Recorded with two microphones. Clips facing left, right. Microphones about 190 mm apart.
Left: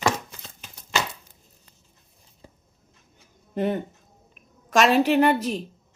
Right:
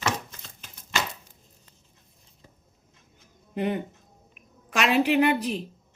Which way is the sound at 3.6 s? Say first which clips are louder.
Left 2 dB; 45° left (ahead or behind).